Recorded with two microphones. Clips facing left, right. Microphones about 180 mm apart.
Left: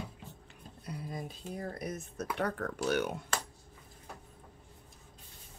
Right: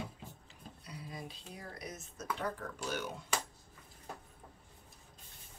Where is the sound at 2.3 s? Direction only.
65° left (ahead or behind).